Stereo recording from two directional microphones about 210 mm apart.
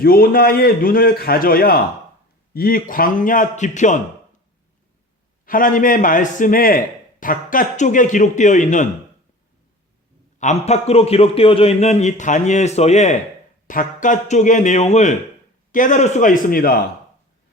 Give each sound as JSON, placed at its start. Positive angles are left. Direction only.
{"t": 0.0, "sound": "a man's voice", "side_deg": 45}
{"t": 5.5, "sound": "a man's voice", "side_deg": 40}
{"t": 10.4, "sound": "a man's voice", "side_deg": 30}